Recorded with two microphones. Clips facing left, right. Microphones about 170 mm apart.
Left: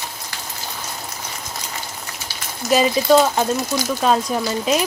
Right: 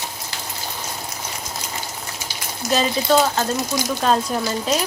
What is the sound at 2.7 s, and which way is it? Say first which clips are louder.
A woman's voice: left 4 dB; 10° left (ahead or behind).